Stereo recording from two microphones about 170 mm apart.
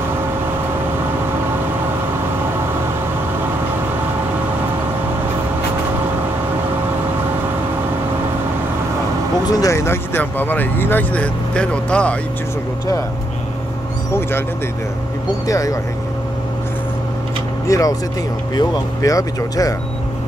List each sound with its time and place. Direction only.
9.5 s speech: 20° left (ahead or behind)
15.4 s speech: 20° left (ahead or behind)
17.6 s speech: 20° left (ahead or behind)